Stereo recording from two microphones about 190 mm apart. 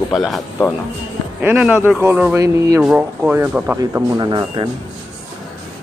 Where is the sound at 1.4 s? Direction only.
10° right (ahead or behind).